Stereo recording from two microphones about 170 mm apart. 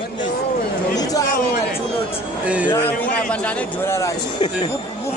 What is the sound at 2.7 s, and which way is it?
A man's voice, 10° left (ahead or behind).